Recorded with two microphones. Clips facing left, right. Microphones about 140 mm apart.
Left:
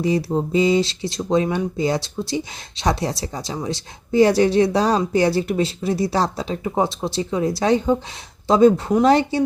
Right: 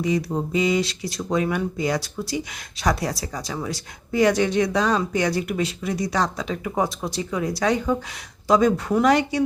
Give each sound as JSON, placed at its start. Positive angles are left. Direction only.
{"t": 0.0, "sound": "speech", "side_deg": 30}